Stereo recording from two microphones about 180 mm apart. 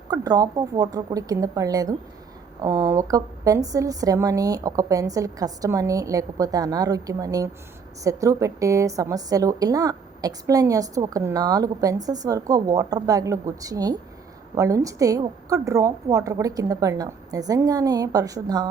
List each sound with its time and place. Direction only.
0.1 s a woman's voice: 20° right (ahead or behind)